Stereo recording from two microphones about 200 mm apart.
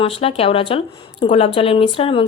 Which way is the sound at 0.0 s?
30° left (ahead or behind).